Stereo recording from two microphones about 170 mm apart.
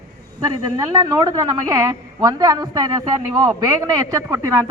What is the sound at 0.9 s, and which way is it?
Speech, 25° right (ahead or behind).